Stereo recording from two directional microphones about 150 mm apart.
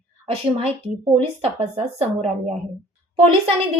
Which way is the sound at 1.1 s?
40° right (ahead or behind).